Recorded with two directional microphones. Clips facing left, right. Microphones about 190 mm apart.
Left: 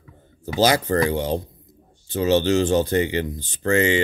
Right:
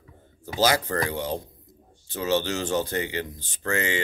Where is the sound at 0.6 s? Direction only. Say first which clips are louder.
Left 5 dB; 20° left (ahead or behind).